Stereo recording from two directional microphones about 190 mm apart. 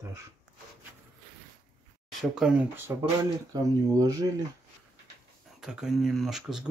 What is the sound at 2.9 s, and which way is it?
Speech, 15° right (ahead or behind).